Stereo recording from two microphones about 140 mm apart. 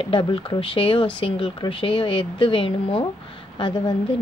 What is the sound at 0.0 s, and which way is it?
Speech, 35° left (ahead or behind).